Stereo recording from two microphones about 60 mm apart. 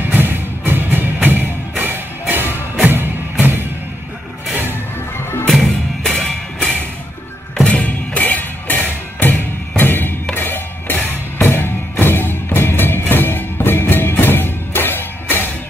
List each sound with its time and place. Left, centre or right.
0.1 s music: right
5.5 s music: centre
7.6 s music: left